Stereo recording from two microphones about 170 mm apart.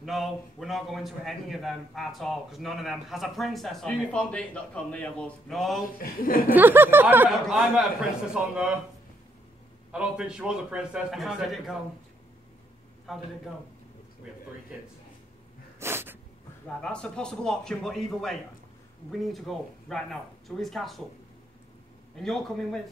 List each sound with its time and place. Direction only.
0.0 s a man's voice: centre (ahead or behind)
5.9 s a woman's voice: 55° left (ahead or behind)
6.5 s a sound: 10° right (ahead or behind)
7.2 s a man's voice: centre (ahead or behind)
9.9 s a man's voice: 5° right (ahead or behind)
13.1 s a man's voice: centre (ahead or behind)
15.8 s snort: 15° right (ahead or behind)
16.8 s a man's voice: 5° left (ahead or behind)
22.1 s a man's voice: centre (ahead or behind)